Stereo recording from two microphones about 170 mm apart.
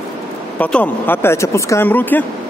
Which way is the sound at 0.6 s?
10° left (ahead or behind).